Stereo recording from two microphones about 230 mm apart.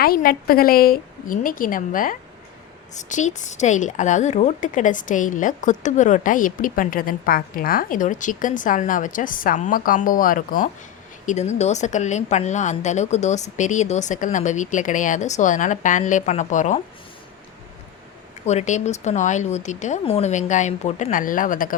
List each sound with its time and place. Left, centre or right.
0.0 s a woman's voice: left
18.4 s a woman's voice: left